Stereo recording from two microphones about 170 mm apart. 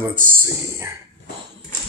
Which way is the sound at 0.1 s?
55° right (ahead or behind).